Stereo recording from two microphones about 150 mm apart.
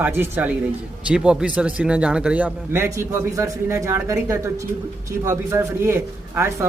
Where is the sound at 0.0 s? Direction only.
15° right (ahead or behind).